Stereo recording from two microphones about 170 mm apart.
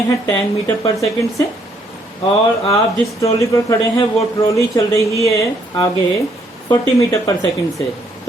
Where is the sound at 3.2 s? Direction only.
20° left (ahead or behind).